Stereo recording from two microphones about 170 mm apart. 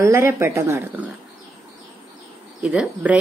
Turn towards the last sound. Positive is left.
turn(degrees=-5)  # may be behind; listen again after turning